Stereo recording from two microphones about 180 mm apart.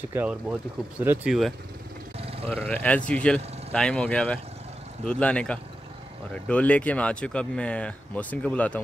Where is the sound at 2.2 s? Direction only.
35° right (ahead or behind).